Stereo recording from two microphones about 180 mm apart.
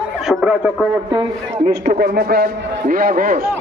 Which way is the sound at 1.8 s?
65° right (ahead or behind).